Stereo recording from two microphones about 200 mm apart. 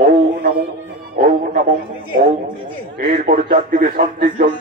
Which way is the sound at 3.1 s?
45° right (ahead or behind).